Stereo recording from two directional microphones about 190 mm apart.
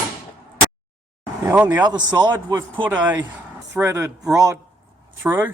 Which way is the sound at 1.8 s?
20° right (ahead or behind).